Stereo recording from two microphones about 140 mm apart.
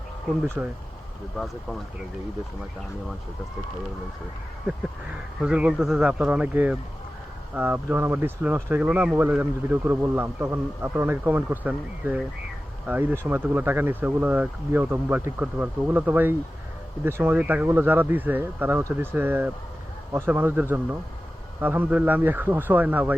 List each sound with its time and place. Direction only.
0.4 s speech: 15° right (ahead or behind)
1.4 s speech: centre (ahead or behind)
4.7 s speech: 10° right (ahead or behind)